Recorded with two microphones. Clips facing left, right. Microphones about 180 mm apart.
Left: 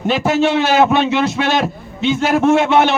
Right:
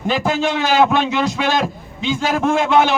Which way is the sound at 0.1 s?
5° left (ahead or behind).